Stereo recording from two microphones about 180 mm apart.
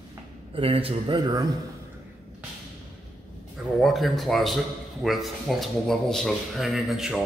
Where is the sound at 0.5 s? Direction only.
30° right (ahead or behind).